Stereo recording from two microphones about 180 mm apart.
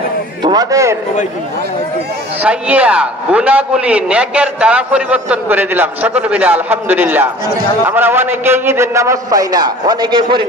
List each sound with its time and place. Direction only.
0.4 s a man's voice: 20° right (ahead or behind)
2.4 s a man's voice: 5° right (ahead or behind); by 10.4 s 25° right (ahead or behind)